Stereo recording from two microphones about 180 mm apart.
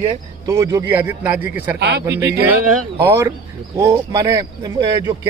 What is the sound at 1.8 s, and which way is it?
Speech, 70° right (ahead or behind).